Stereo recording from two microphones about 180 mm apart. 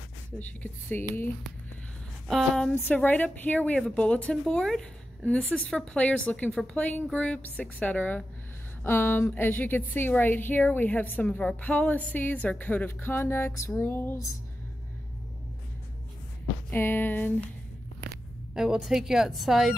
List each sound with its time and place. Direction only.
0.4 s a woman's voice: 10° left (ahead or behind)
2.2 s a woman's voice: centre (ahead or behind)
16.7 s a woman's voice: 10° left (ahead or behind)
18.5 s a woman's voice: 5° right (ahead or behind)